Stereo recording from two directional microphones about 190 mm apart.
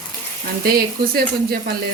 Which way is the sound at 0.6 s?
50° right (ahead or behind).